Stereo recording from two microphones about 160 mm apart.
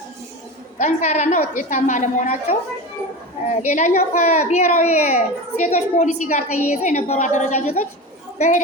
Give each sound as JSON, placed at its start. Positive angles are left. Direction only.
{"t": 0.8, "sound": "a woman's voice", "side_deg": 45}
{"t": 3.7, "sound": "a woman's voice", "side_deg": 45}